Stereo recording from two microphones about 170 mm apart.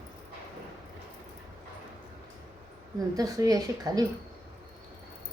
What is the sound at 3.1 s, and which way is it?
Speech, 20° right (ahead or behind).